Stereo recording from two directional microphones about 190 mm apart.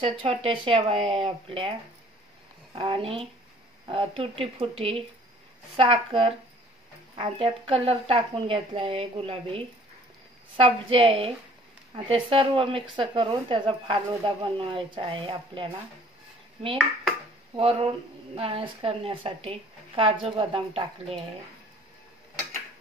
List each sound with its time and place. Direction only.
0.0 s speech: 30° right (ahead or behind)
17.6 s speech: 30° right (ahead or behind)